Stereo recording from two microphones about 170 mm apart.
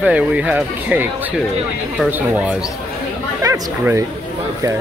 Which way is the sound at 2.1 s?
10° right (ahead or behind).